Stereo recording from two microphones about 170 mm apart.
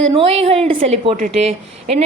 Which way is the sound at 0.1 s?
35° right (ahead or behind).